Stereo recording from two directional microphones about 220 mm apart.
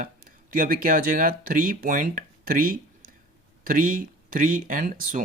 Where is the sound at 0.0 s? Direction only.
40° right (ahead or behind).